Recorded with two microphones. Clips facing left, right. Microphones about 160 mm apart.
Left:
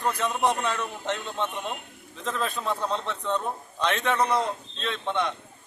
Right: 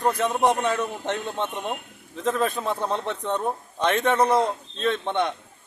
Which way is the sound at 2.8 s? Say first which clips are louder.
Right 2 dB; 15° right (ahead or behind).